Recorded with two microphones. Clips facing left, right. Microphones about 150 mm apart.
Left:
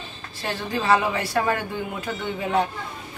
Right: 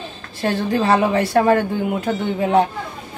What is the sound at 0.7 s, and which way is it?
A man's voice, 50° right (ahead or behind).